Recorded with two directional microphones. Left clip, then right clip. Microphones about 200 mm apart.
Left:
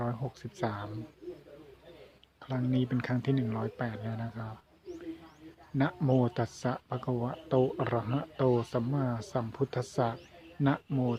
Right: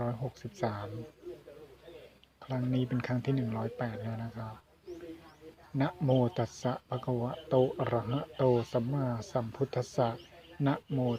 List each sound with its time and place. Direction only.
0.0 s speech: 15° left (ahead or behind)
2.4 s speech: 15° left (ahead or behind)
5.7 s speech: 15° left (ahead or behind)